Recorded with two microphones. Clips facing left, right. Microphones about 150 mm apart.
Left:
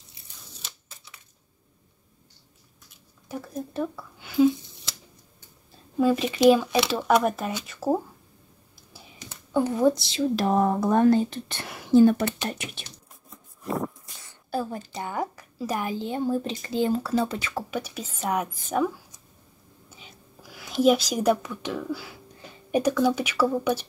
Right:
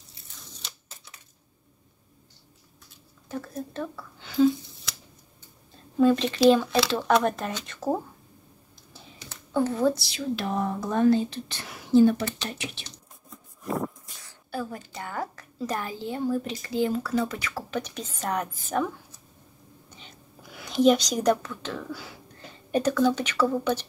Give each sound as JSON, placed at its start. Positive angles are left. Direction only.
{"t": 3.3, "sound": "speech", "side_deg": 10}
{"t": 5.9, "sound": "speech", "side_deg": 5}
{"t": 8.9, "sound": "a sound", "side_deg": 15}
{"t": 10.3, "sound": "speech", "side_deg": 40}
{"t": 14.5, "sound": "a woman's voice", "side_deg": 35}
{"t": 14.9, "sound": "a woman's voice", "side_deg": 20}
{"t": 17.6, "sound": "speech", "side_deg": 10}
{"t": 19.9, "sound": "whispering", "side_deg": 5}
{"t": 22.7, "sound": "speech", "side_deg": 10}